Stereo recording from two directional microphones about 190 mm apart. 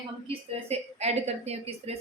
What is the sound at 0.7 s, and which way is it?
A woman's voice, 35° right (ahead or behind).